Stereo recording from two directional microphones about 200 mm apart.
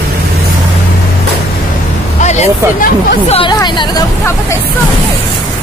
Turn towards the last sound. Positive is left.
turn(degrees=20)  # may be behind; listen again after turning